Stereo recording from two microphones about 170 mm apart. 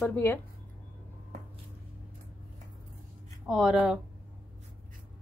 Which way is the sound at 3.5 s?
Centre (ahead or behind).